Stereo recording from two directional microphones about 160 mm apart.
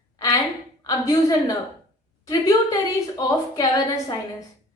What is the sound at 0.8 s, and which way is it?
A woman's voice, 20° left (ahead or behind).